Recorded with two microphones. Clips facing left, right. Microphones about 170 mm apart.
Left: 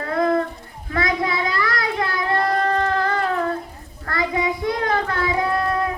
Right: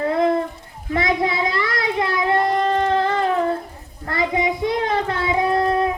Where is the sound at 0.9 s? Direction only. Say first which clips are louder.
Right 2 dB; 25° right (ahead or behind).